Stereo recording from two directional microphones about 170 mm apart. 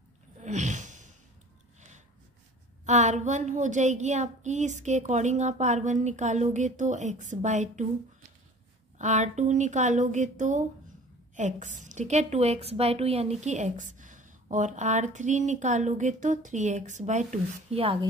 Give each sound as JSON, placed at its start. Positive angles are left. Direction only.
{"t": 0.4, "sound": "a sound", "side_deg": -45}
{"t": 2.8, "sound": "a woman's voice", "side_deg": -45}
{"t": 8.9, "sound": "a woman's voice", "side_deg": -45}